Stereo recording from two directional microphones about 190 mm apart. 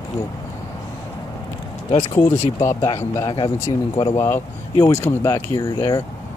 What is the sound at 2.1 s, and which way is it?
Speech, 15° left (ahead or behind).